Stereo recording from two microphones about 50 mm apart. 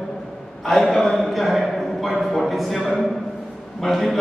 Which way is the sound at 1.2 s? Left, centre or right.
Centre.